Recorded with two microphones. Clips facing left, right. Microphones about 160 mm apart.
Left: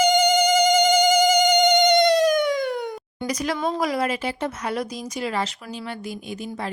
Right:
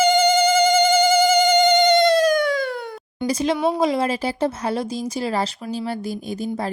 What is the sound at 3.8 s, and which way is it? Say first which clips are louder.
Speech: right 4 dB; 25° right (ahead or behind).